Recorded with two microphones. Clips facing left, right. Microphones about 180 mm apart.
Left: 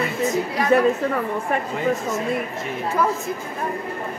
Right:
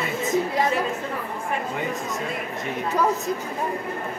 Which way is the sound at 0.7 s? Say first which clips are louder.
Left 9 dB; 55° left (ahead or behind).